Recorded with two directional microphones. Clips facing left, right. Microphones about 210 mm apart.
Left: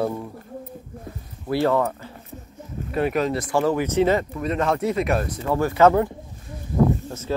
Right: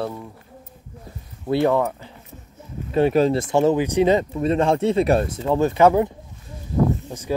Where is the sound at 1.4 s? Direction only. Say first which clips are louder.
Right 2 dB; 20° right (ahead or behind).